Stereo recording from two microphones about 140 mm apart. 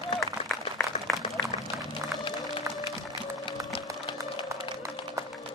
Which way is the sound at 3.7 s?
40° left (ahead or behind).